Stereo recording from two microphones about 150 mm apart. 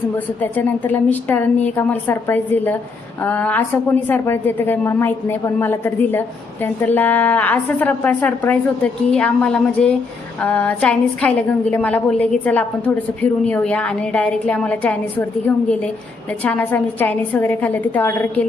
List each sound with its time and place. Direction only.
0.4 s a woman's voice: 10° left (ahead or behind)